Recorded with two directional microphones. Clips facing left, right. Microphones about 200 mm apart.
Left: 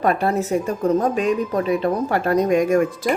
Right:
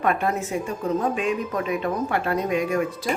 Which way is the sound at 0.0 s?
35° left (ahead or behind).